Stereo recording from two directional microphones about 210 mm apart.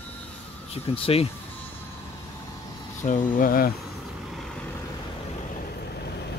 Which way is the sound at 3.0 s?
40° left (ahead or behind).